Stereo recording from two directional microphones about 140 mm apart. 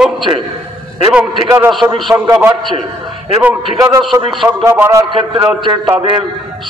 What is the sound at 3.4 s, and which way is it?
Speech, 20° right (ahead or behind).